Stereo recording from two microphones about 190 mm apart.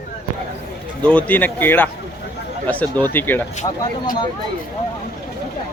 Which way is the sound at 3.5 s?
40° left (ahead or behind).